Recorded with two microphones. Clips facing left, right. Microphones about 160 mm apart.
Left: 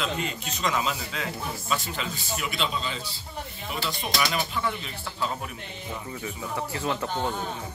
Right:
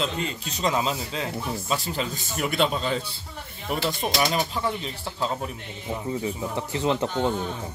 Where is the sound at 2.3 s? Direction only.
50° right (ahead or behind).